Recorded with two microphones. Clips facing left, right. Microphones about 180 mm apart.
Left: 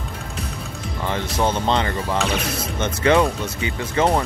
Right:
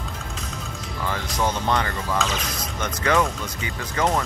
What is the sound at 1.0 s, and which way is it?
Speech, 25° left (ahead or behind).